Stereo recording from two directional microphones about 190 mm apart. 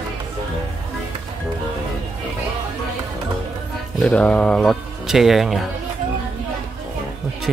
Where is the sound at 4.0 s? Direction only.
5° left (ahead or behind).